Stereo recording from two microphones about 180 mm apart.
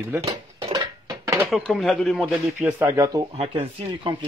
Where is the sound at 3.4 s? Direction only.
35° right (ahead or behind).